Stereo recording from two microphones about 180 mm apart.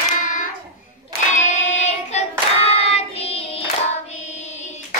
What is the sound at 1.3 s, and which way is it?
Singing, 40° left (ahead or behind).